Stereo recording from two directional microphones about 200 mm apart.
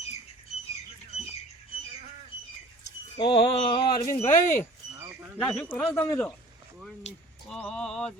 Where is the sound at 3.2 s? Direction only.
25° left (ahead or behind).